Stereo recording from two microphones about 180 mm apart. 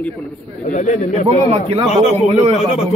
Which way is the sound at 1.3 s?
30° right (ahead or behind).